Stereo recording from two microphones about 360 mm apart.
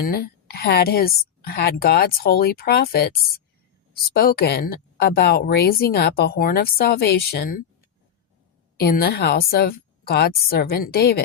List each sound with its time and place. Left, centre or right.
0.0 s a woman's voice: left
8.8 s a woman's voice: left